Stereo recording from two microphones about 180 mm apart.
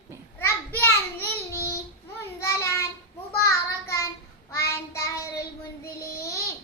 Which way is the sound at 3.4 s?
15° left (ahead or behind).